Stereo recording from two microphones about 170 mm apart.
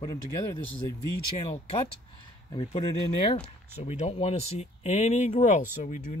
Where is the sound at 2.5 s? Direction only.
35° left (ahead or behind).